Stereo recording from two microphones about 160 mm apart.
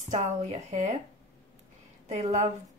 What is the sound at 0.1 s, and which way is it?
Speech, 45° right (ahead or behind).